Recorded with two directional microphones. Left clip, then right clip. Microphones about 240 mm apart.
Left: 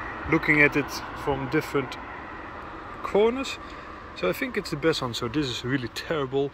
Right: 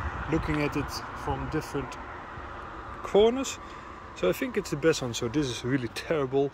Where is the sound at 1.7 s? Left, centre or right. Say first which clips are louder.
Left 6 dB; left.